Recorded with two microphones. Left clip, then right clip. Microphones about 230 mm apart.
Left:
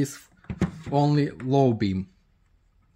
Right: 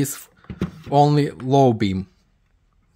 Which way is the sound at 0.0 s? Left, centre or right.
Right.